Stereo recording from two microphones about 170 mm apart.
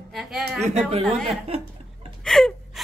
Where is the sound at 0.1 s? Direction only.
Centre (ahead or behind).